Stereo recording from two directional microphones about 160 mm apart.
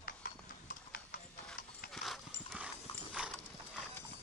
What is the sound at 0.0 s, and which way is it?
Clip-clop, 60° left (ahead or behind).